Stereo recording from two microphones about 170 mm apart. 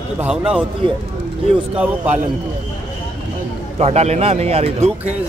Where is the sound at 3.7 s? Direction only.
40° right (ahead or behind).